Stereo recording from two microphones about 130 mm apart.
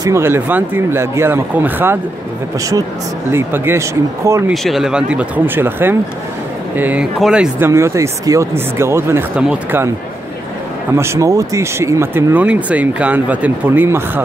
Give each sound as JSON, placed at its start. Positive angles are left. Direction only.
{"t": 0.0, "sound": "speech", "side_deg": -20}
{"t": 3.3, "sound": "speech", "side_deg": -15}
{"t": 4.5, "sound": "speech", "side_deg": -5}
{"t": 7.6, "sound": "speech", "side_deg": -20}
{"t": 9.4, "sound": "speech", "side_deg": -10}
{"t": 10.9, "sound": "speech", "side_deg": -20}